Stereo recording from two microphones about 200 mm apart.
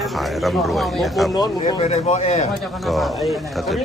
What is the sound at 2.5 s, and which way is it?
A man's voice, centre (ahead or behind).